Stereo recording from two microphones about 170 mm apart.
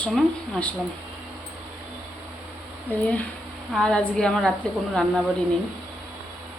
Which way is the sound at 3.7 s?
5° left (ahead or behind).